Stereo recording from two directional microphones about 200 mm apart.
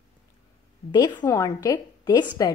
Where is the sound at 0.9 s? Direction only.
20° left (ahead or behind).